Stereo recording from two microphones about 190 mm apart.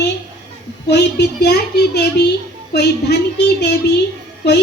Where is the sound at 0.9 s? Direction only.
60° left (ahead or behind).